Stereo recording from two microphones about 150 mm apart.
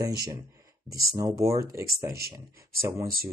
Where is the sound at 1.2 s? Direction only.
20° right (ahead or behind).